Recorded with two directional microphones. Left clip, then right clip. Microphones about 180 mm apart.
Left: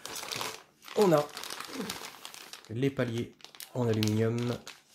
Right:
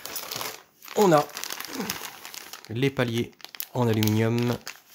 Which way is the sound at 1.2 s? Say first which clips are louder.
Right 6 dB; 10° right (ahead or behind).